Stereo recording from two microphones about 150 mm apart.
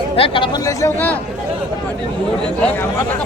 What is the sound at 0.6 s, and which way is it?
Speech, 15° left (ahead or behind).